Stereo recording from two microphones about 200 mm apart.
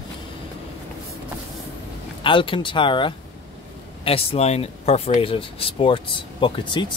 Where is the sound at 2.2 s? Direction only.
25° left (ahead or behind).